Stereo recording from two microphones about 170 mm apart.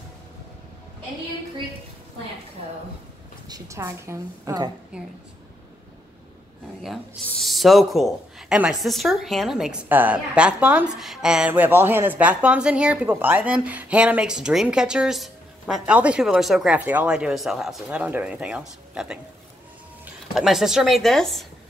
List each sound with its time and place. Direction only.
3.4 s a woman's voice: 20° right (ahead or behind)
4.9 s a woman's voice: 5° right (ahead or behind)
7.2 s a woman's voice: centre (ahead or behind)
20.3 s a woman's voice: centre (ahead or behind)